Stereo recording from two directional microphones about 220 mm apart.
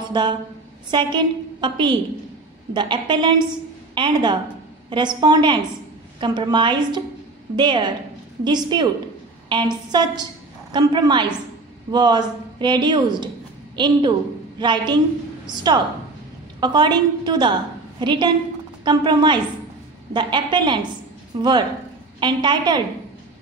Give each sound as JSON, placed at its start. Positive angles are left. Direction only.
{"t": 0.1, "sound": "a woman's voice", "side_deg": -20}